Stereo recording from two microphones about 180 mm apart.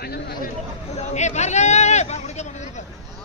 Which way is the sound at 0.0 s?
60° left (ahead or behind).